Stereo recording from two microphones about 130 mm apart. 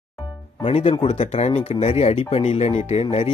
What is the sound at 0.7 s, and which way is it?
Speech, 55° left (ahead or behind).